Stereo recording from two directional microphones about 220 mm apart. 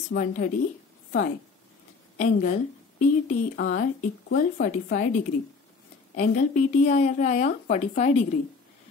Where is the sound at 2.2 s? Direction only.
35° left (ahead or behind).